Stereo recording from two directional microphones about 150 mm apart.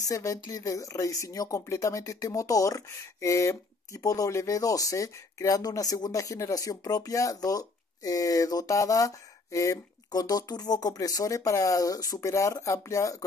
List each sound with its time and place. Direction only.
0.1 s speech: 20° left (ahead or behind)